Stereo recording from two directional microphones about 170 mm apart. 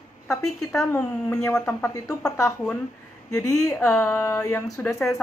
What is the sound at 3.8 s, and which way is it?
Speech, 10° left (ahead or behind).